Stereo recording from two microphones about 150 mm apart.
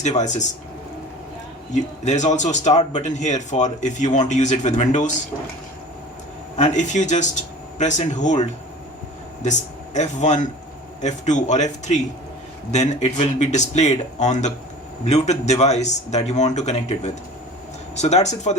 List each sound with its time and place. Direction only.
0.0 s speech: 50° left (ahead or behind)
1.7 s speech: 50° left (ahead or behind)
6.6 s speech: 55° left (ahead or behind)